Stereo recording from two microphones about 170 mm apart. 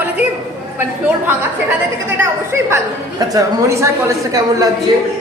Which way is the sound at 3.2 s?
20° right (ahead or behind).